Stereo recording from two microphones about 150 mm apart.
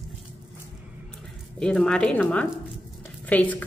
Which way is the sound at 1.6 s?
5° left (ahead or behind).